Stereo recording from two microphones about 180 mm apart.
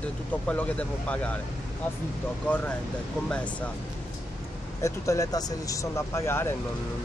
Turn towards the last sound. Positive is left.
turn(degrees=15)  # may be behind; listen again after turning